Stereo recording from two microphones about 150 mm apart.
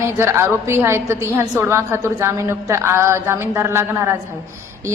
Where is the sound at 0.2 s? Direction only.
15° right (ahead or behind).